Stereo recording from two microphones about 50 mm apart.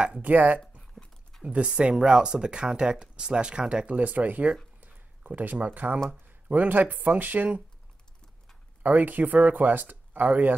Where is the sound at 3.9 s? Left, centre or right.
Right.